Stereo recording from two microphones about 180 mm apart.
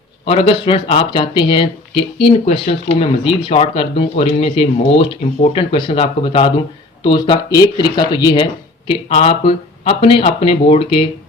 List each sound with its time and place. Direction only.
0.3 s speech: 30° left (ahead or behind)